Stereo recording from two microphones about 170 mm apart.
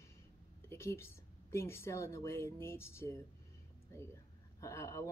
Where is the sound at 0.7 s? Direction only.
15° left (ahead or behind).